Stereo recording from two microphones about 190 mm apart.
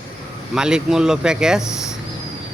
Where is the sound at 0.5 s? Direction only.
5° right (ahead or behind).